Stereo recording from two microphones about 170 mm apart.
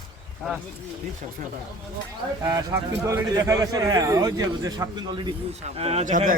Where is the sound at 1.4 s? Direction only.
50° right (ahead or behind).